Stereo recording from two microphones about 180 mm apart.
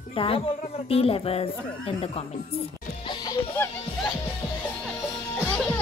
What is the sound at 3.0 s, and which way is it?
Speech, 25° left (ahead or behind).